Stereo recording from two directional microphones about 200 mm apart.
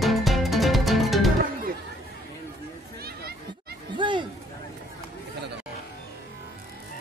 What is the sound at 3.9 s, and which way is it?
Chatter, 25° right (ahead or behind).